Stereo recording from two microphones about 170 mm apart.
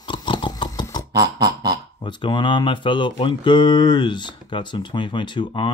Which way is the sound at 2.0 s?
25° left (ahead or behind).